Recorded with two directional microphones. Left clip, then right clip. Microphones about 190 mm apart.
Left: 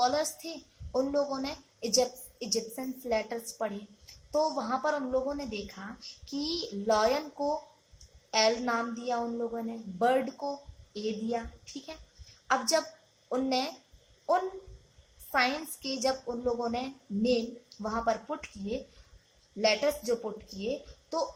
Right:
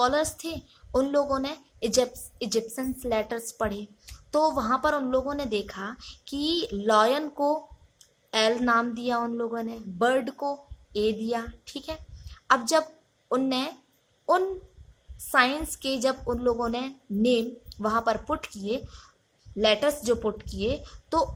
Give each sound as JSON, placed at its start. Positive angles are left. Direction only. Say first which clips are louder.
{"t": 0.0, "sound": "speech", "louder": "right 4 dB", "side_deg": -50}
{"t": 8.3, "sound": "speech", "louder": "right 4 dB", "side_deg": -50}
{"t": 15.3, "sound": "speech", "louder": "right 6 dB", "side_deg": -50}